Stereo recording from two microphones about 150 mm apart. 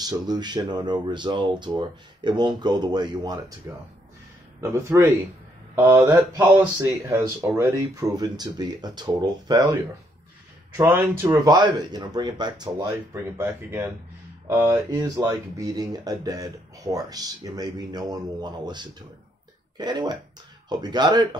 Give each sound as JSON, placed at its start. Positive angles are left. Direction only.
{"t": 0.0, "sound": "speech", "side_deg": -30}
{"t": 6.3, "sound": "speech", "side_deg": -25}
{"t": 10.8, "sound": "speech", "side_deg": -15}
{"t": 11.2, "sound": "speech", "side_deg": -25}
{"t": 14.9, "sound": "speech", "side_deg": -25}